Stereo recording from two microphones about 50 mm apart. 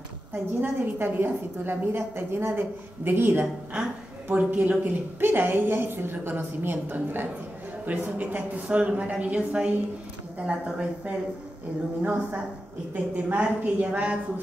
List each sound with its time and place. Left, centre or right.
0.5 s a woman's voice: right
4.3 s speech: right
5.2 s a woman's voice: right
12.0 s a woman's voice: right